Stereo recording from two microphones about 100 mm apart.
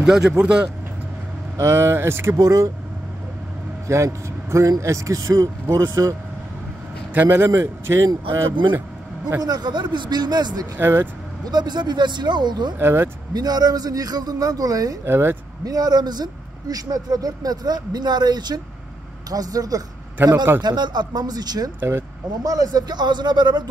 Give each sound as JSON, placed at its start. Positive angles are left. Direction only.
{"t": 0.0, "sound": "speech", "side_deg": -5}
{"t": 1.6, "sound": "speech", "side_deg": -25}
{"t": 3.8, "sound": "speech", "side_deg": -30}
{"t": 7.2, "sound": "speech", "side_deg": -25}
{"t": 9.4, "sound": "speech", "side_deg": -45}
{"t": 10.8, "sound": "speech", "side_deg": -20}
{"t": 11.4, "sound": "speech", "side_deg": -45}
{"t": 12.7, "sound": "speech", "side_deg": -25}
{"t": 13.3, "sound": "speech", "side_deg": -40}
{"t": 15.0, "sound": "speech", "side_deg": -25}
{"t": 15.6, "sound": "speech", "side_deg": -40}